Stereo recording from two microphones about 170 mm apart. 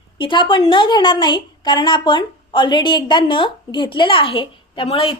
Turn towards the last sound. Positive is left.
turn(degrees=30)  # may be behind; listen again after turning